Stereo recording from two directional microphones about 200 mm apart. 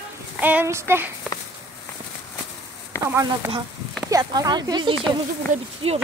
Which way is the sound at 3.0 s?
15° right (ahead or behind).